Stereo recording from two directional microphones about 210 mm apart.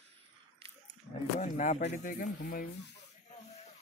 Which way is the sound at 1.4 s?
35° left (ahead or behind).